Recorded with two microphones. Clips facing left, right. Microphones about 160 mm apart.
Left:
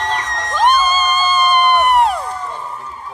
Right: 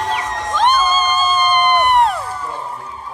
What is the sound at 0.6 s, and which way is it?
Crowd, 10° left (ahead or behind).